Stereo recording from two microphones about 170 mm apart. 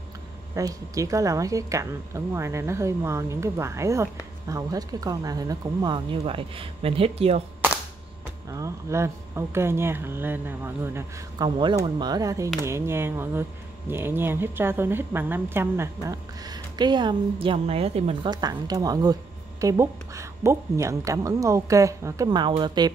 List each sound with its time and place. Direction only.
0.6 s speech: 20° right (ahead or behind); by 7.4 s 35° right (ahead or behind)
8.5 s speech: 20° right (ahead or behind); by 18.3 s 35° right (ahead or behind)
18.3 s speech: 25° right (ahead or behind)